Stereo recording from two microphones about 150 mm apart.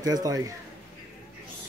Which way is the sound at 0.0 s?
25° right (ahead or behind).